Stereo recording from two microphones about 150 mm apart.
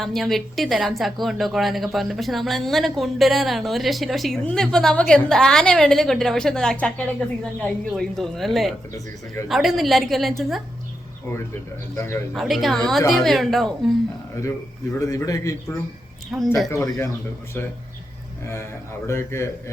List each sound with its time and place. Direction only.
0.0 s a woman's voice: centre (ahead or behind)
11.9 s speech: 20° left (ahead or behind)
12.3 s a woman's voice: centre (ahead or behind)
14.9 s speech: 20° left (ahead or behind)
16.3 s a woman's voice: 5° right (ahead or behind)
16.6 s speech: 20° left (ahead or behind)
19.0 s a man's voice: 15° left (ahead or behind)